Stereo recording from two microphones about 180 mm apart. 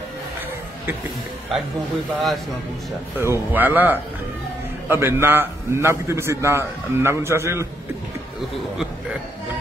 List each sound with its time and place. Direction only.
3.2 s a man's voice: 10° right (ahead or behind)